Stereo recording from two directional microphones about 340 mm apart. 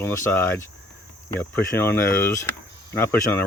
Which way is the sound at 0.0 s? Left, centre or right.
Centre.